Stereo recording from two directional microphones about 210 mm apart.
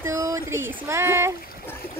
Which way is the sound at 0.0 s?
15° right (ahead or behind).